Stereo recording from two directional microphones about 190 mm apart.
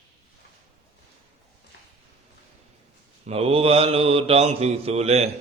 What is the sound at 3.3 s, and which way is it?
Speech, 30° right (ahead or behind).